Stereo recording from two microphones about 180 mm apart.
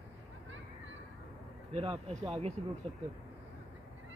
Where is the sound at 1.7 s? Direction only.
35° right (ahead or behind).